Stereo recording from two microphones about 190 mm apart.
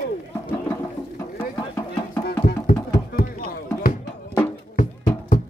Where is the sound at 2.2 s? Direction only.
55° left (ahead or behind).